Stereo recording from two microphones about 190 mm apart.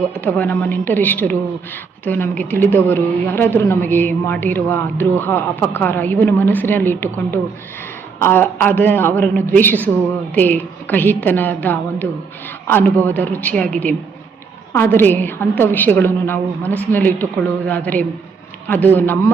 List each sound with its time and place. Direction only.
0.2 s a woman's voice: 10° left (ahead or behind)